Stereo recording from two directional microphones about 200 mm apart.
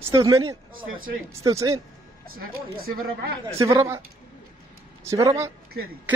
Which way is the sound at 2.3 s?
45° right (ahead or behind).